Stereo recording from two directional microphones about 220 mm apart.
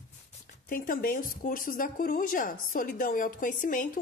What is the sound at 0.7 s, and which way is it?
A woman's voice, 40° left (ahead or behind).